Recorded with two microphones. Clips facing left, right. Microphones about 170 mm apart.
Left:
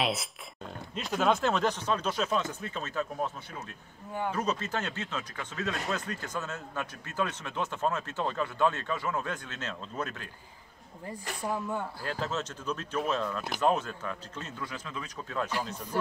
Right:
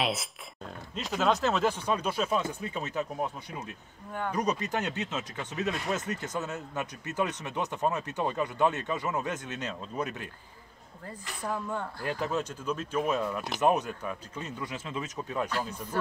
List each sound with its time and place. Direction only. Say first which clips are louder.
0.0 s speech: even; centre (ahead or behind); by 10.3 s 15° right (ahead or behind)
11.1 s a woman's voice: left 1 dB; 10° left (ahead or behind)
12.0 s speech: right 3 dB; 15° right (ahead or behind)